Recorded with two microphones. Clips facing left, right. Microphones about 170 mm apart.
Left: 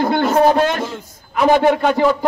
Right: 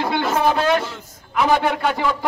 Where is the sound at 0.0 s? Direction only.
45° left (ahead or behind).